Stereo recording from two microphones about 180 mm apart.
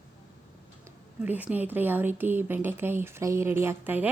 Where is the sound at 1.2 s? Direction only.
5° right (ahead or behind).